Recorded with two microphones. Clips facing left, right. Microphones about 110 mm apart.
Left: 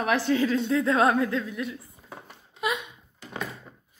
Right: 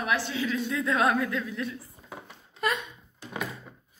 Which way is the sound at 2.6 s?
10° left (ahead or behind).